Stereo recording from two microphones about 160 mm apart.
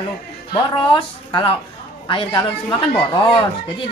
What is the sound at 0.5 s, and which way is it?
Speech, 30° left (ahead or behind).